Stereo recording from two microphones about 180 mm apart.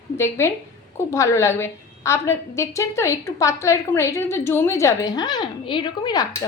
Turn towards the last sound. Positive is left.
turn(degrees=25)  # may be behind; listen again after turning